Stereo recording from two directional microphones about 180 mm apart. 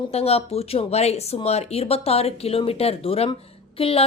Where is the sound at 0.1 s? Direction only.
35° left (ahead or behind).